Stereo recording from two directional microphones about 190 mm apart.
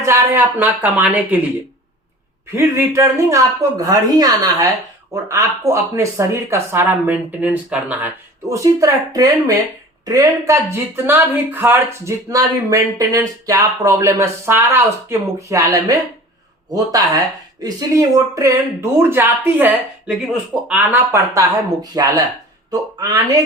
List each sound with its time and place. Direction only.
0.0 s speech: 15° right (ahead or behind)
2.6 s speech: 15° right (ahead or behind)